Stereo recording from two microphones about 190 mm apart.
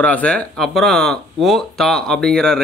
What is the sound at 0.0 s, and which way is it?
Speech, 5° left (ahead or behind).